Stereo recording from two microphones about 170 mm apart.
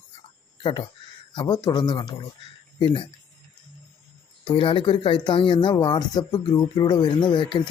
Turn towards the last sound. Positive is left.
turn(degrees=30)  # may be behind; listen again after turning